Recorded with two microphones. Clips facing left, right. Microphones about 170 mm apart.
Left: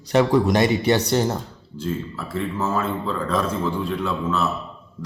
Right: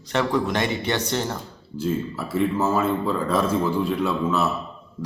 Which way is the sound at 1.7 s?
5° right (ahead or behind).